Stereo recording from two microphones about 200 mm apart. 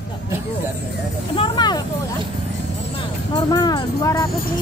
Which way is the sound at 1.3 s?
25° left (ahead or behind).